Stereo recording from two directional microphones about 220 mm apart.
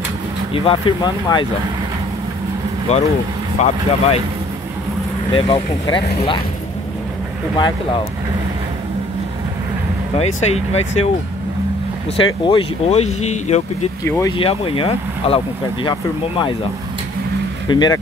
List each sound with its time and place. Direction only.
0.5 s speech: 25° left (ahead or behind)
2.9 s speech: 30° left (ahead or behind)
5.3 s speech: 25° left (ahead or behind)
7.5 s speech: 20° left (ahead or behind)
10.1 s speech: 30° left (ahead or behind)
12.4 s speech: 25° left (ahead or behind)
14.0 s speech: 15° left (ahead or behind)
14.3 s speech: 25° left (ahead or behind)
17.6 s speech: 20° left (ahead or behind)